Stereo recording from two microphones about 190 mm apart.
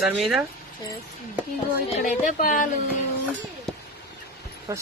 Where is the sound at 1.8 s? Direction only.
40° left (ahead or behind).